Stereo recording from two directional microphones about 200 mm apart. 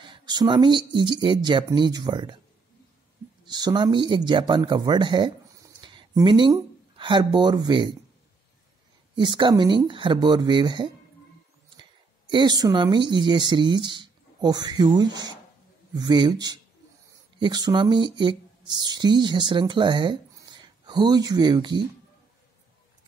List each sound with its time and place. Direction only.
0.0 s a woman's voice: 25° right (ahead or behind)
3.4 s speech: 20° right (ahead or behind)
9.1 s a woman's voice: 20° right (ahead or behind)
12.3 s a woman's voice: 20° right (ahead or behind)